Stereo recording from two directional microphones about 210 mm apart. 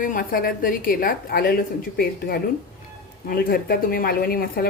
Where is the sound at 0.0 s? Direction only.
40° left (ahead or behind).